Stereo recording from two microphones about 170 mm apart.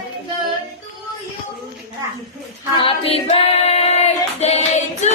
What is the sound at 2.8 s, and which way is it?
Singing, 35° left (ahead or behind).